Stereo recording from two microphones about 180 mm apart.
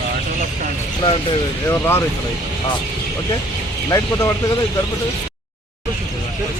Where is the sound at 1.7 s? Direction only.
15° left (ahead or behind).